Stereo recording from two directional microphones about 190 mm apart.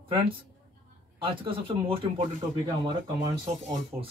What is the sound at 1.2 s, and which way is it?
Speech, 25° right (ahead or behind).